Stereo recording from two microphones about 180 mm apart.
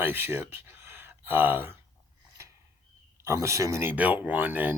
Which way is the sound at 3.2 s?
15° right (ahead or behind).